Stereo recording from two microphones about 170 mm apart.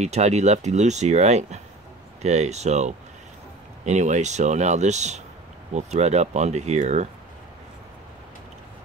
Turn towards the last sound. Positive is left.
turn(degrees=-40)  # may be behind; listen again after turning